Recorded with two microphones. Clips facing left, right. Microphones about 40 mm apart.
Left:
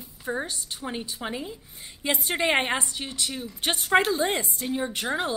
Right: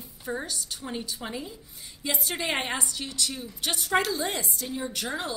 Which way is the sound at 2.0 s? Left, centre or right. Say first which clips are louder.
Left 5 dB; left.